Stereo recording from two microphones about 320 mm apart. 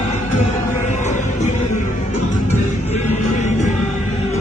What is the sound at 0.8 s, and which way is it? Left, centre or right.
Music, left.